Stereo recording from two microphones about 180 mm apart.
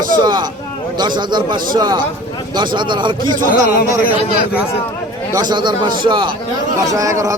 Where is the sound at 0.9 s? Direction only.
25° right (ahead or behind).